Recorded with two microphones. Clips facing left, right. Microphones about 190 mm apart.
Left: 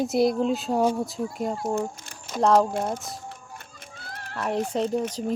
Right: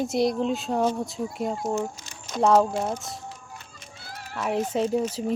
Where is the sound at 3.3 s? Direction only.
55° left (ahead or behind).